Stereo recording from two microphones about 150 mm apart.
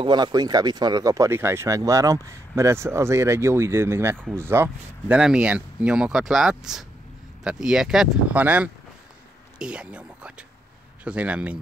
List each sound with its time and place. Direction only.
0.0 s speech: 30° right (ahead or behind); by 11.5 s 10° right (ahead or behind)